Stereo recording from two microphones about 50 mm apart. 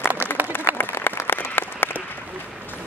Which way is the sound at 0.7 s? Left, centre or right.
Left.